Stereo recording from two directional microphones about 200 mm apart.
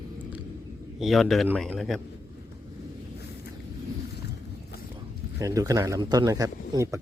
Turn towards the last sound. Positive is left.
turn(degrees=-20)  # may be behind; listen again after turning